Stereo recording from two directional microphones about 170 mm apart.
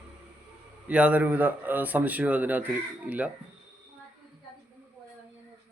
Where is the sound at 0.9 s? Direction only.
10° right (ahead or behind).